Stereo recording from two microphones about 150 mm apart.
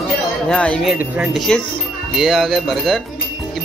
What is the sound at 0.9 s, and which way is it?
Speech, 5° right (ahead or behind).